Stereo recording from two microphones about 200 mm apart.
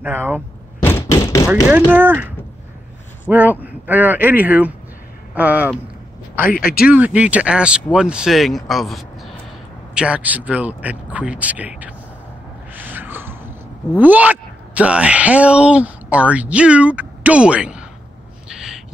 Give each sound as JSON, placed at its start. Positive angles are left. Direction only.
{"t": 0.0, "sound": "speech", "side_deg": -10}
{"t": 0.8, "sound": "knock", "side_deg": 15}
{"t": 1.9, "sound": "speech", "side_deg": -10}
{"t": 6.4, "sound": "speech", "side_deg": 45}
{"t": 6.9, "sound": "speech", "side_deg": -5}
{"t": 12.7, "sound": "a sound", "side_deg": -10}
{"t": 13.9, "sound": "a woman's voice", "side_deg": -10}
{"t": 18.5, "sound": "owl", "side_deg": -5}